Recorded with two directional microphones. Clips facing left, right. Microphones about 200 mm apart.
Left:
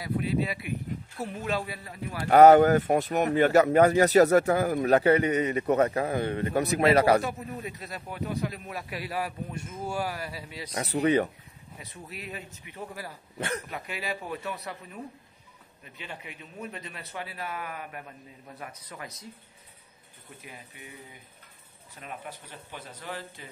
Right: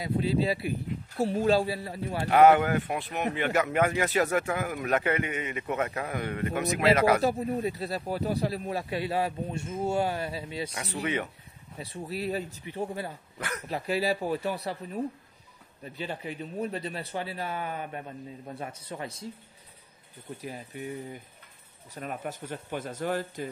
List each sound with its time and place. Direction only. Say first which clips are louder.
0.0 s a man's voice: right 2 dB; 25° right (ahead or behind)
2.2 s a man's voice: left 4 dB; 40° left (ahead or behind)
7.2 s speech: right 4 dB; 30° right (ahead or behind)
10.7 s a man's voice: left 11 dB; 35° left (ahead or behind)
11.8 s a man's voice: right 9 dB; 30° right (ahead or behind)
13.4 s speech: left 4 dB; 25° left (ahead or behind)
13.7 s a man's voice: right 7 dB; 35° right (ahead or behind)
20.4 s a man's voice: right 10 dB; 40° right (ahead or behind)